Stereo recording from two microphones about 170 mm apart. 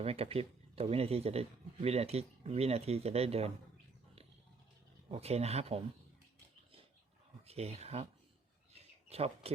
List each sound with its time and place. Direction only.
0.0 s speech: 35° right (ahead or behind)
5.1 s speech: 40° right (ahead or behind)
7.4 s speech: 35° right (ahead or behind)
8.7 s a sound: 35° right (ahead or behind)